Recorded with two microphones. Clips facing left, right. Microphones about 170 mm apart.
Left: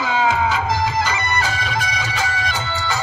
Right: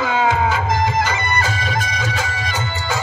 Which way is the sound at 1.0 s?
50° right (ahead or behind).